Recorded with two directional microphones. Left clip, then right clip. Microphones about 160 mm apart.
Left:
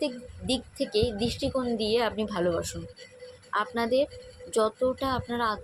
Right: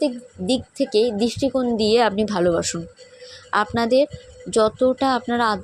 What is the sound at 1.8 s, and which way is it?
A woman's voice, 45° right (ahead or behind).